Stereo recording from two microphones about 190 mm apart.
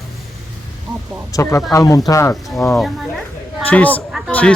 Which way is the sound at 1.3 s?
15° left (ahead or behind).